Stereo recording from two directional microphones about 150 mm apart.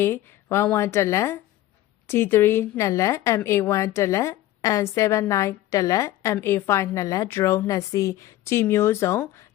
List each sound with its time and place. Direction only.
0.0 s a woman's voice: 15° left (ahead or behind)